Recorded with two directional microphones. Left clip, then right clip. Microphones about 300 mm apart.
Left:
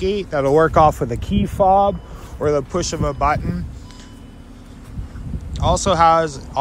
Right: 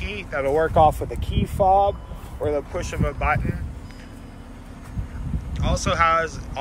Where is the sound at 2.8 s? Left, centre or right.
Centre.